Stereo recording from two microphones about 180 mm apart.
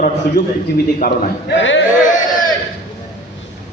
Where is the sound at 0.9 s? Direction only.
55° left (ahead or behind).